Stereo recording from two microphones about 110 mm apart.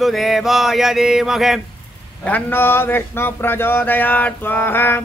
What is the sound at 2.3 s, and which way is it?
Speech, 15° left (ahead or behind).